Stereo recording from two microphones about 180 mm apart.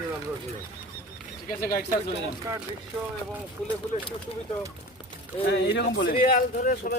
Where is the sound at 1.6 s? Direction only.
55° left (ahead or behind).